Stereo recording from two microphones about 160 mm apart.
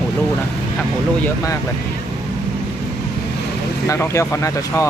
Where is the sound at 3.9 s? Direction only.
15° left (ahead or behind).